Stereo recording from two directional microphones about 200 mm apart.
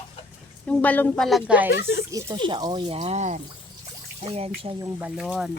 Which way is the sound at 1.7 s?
60° left (ahead or behind).